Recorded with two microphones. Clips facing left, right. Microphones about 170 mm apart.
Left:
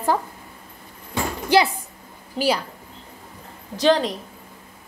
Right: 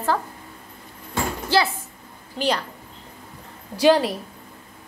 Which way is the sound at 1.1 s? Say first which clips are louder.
Left 3 dB; 15° left (ahead or behind).